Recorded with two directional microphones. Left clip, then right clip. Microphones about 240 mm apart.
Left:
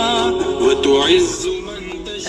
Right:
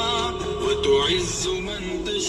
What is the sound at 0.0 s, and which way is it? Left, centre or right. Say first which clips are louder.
Music: left 8 dB; left.